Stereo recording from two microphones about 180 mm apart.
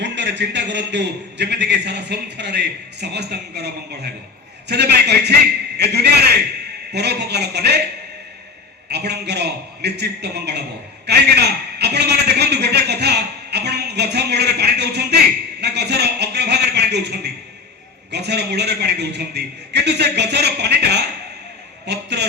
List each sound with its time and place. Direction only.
0.0 s a man's voice: 75° right (ahead or behind)
8.9 s a man's voice: 70° right (ahead or behind)